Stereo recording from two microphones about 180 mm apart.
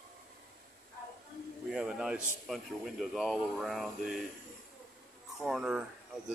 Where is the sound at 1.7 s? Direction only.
5° right (ahead or behind).